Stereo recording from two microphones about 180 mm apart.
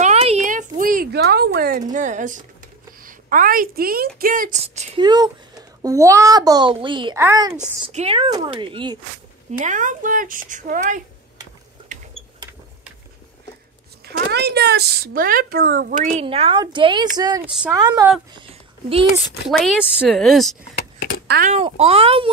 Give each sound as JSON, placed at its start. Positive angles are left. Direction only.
{"t": 0.0, "sound": "a sound", "side_deg": -35}
{"t": 1.1, "sound": "a sound", "side_deg": -65}
{"t": 1.8, "sound": "a woman's voice", "side_deg": -45}
{"t": 4.6, "sound": "a child's voice", "side_deg": -30}
{"t": 7.9, "sound": "a child's voice", "side_deg": -35}
{"t": 9.5, "sound": "speech", "side_deg": -45}
{"t": 14.0, "sound": "speech", "side_deg": -65}
{"t": 16.2, "sound": "a child's voice", "side_deg": -30}
{"t": 17.5, "sound": "speech", "side_deg": -5}
{"t": 17.7, "sound": "a child's voice", "side_deg": -20}
{"t": 19.2, "sound": "speech", "side_deg": 0}
{"t": 20.7, "sound": "a sound", "side_deg": 50}
{"t": 21.5, "sound": "speech", "side_deg": -35}